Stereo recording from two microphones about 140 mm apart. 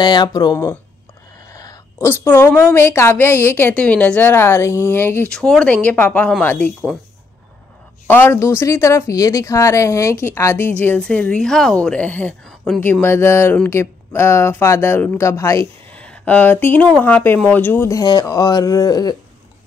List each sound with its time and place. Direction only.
0.0 s a woman's voice: 30° left (ahead or behind); by 6.7 s 10° left (ahead or behind)
8.1 s a woman's voice: 15° left (ahead or behind)
12.8 s a woman's voice: 15° left (ahead or behind)
15.9 s speech: 10° left (ahead or behind); by 19.1 s 30° left (ahead or behind)